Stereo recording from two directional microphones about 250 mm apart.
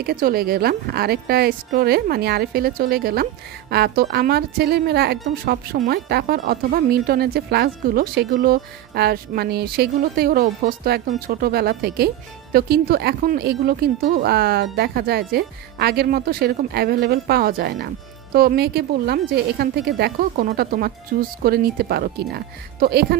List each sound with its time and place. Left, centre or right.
0.0 s speech: right